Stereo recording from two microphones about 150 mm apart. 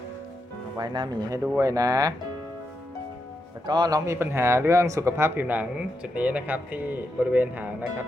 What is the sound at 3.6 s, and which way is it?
A man's voice, 30° right (ahead or behind).